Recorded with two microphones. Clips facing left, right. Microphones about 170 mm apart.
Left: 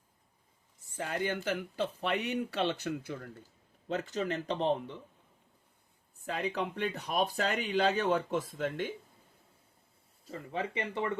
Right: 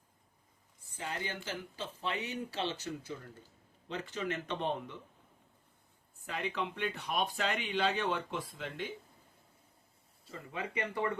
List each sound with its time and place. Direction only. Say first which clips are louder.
0.9 s speech: left 6 dB; 55° left (ahead or behind)
3.8 s speech: left 4 dB; 45° left (ahead or behind)
6.2 s speech: left 3 dB; 40° left (ahead or behind)
10.2 s speech: left 5 dB; 30° left (ahead or behind)